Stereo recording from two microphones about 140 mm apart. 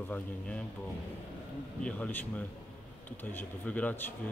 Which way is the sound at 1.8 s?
10° left (ahead or behind).